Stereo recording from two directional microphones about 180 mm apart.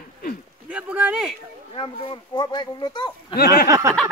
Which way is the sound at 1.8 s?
25° left (ahead or behind).